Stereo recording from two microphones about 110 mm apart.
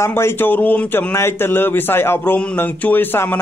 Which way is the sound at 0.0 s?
25° left (ahead or behind).